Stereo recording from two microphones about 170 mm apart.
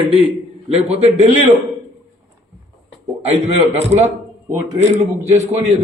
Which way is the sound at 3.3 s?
40° right (ahead or behind).